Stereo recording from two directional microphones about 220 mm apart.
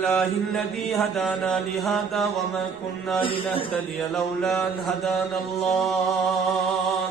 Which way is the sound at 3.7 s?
5° left (ahead or behind).